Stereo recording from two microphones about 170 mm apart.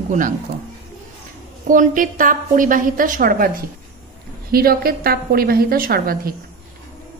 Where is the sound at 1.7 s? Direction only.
50° right (ahead or behind).